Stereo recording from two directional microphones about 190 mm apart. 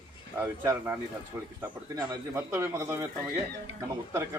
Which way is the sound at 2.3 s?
15° right (ahead or behind).